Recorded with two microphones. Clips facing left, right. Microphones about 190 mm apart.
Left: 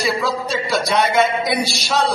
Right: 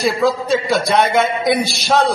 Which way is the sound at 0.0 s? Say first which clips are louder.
Right 4 dB; 55° right (ahead or behind).